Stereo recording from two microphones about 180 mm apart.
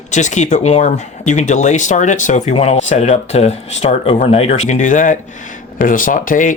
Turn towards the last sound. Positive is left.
turn(degrees=45)  # may be behind; listen again after turning